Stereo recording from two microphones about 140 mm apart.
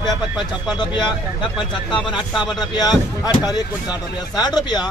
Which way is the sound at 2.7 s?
30° left (ahead or behind).